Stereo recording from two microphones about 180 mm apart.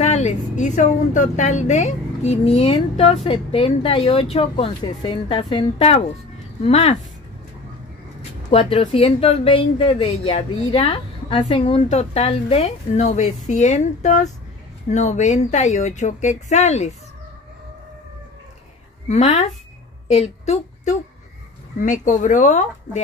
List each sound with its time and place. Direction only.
0.0 s speech: 40° left (ahead or behind)
8.2 s speech: 35° left (ahead or behind)
19.0 s a woman's voice: 40° left (ahead or behind)